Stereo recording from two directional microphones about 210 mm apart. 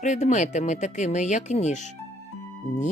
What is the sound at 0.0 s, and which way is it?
Speech, 35° left (ahead or behind).